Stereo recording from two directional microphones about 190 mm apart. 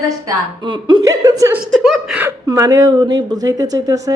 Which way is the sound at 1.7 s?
Centre (ahead or behind).